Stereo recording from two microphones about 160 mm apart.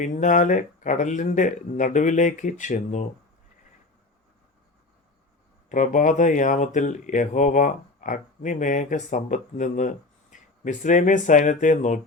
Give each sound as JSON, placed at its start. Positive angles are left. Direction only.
{"t": 0.0, "sound": "speech", "side_deg": 50}
{"t": 5.6, "sound": "speech", "side_deg": 50}